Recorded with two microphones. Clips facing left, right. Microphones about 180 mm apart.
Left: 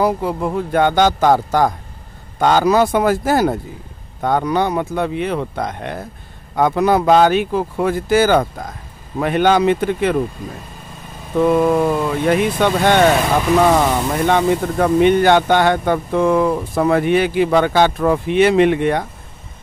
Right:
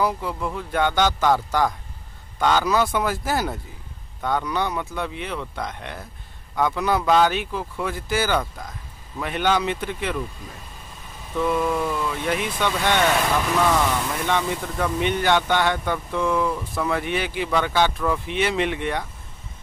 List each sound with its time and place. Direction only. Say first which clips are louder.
0.0 s speech: left 7 dB; 45° left (ahead or behind)